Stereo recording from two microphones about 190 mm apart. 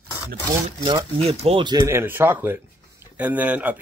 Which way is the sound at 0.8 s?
20° right (ahead or behind).